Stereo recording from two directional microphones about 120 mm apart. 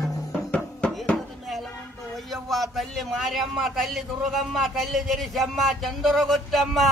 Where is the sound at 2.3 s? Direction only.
Centre (ahead or behind).